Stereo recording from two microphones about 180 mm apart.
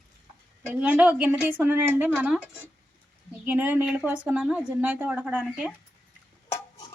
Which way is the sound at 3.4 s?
10° right (ahead or behind).